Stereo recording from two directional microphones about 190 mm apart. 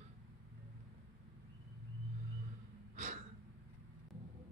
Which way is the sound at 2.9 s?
40° right (ahead or behind).